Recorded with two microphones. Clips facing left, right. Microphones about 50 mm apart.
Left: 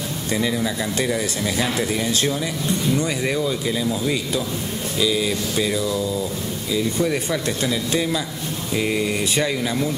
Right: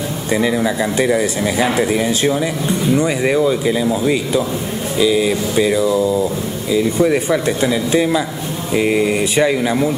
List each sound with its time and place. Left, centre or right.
0.3 s speech: centre